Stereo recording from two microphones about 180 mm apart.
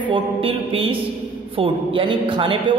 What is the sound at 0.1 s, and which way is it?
A man's voice, 30° right (ahead or behind).